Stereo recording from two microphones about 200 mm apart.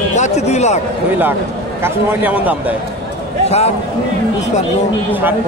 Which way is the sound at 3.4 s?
30° left (ahead or behind).